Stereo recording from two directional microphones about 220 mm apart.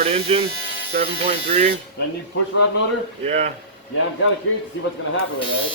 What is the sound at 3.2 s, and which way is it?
Speech, 30° right (ahead or behind).